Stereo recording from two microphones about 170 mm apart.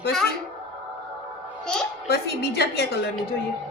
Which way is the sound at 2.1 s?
75° left (ahead or behind).